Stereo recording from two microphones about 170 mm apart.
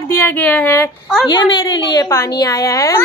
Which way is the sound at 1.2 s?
25° left (ahead or behind).